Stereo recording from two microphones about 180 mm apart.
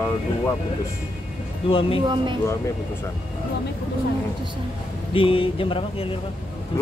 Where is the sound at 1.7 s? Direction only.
30° left (ahead or behind).